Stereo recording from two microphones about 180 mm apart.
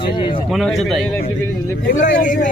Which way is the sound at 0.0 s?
30° left (ahead or behind).